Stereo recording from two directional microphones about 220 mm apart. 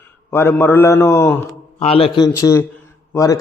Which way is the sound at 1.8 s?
25° left (ahead or behind).